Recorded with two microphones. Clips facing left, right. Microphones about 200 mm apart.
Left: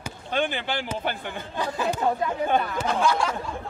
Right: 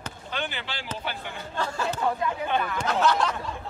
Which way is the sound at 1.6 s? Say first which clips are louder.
Left 2 dB; 15° left (ahead or behind).